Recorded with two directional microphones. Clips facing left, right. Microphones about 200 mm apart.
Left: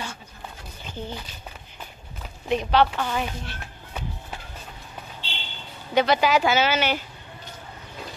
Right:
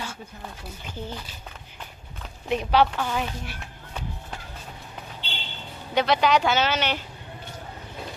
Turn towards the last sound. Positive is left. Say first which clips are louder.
# left 2 dB
turn(degrees=5)  # may be behind; listen again after turning